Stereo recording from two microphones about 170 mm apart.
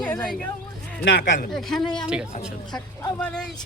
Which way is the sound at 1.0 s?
90° left.